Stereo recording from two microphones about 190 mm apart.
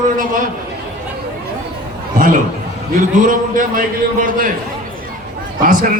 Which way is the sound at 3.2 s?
45° right (ahead or behind).